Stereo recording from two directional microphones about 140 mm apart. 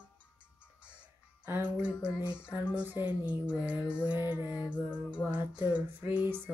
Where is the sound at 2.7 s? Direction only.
10° right (ahead or behind).